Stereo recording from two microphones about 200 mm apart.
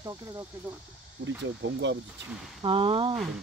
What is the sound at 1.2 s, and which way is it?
Speech, 65° right (ahead or behind).